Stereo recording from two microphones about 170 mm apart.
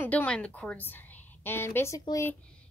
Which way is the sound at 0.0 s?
10° left (ahead or behind).